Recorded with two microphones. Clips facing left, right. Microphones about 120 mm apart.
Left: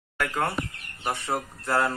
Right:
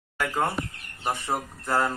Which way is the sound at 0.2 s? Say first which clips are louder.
Right 1 dB; 15° right (ahead or behind).